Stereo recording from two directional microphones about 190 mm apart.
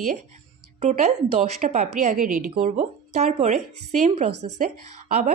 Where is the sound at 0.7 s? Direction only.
35° right (ahead or behind).